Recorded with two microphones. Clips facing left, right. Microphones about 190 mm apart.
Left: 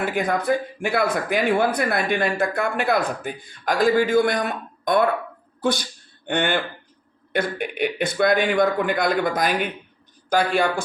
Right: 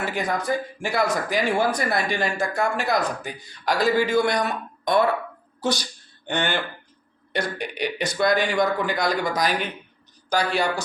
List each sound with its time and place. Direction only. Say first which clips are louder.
0.0 s a man's voice: left 3 dB; 50° left (ahead or behind)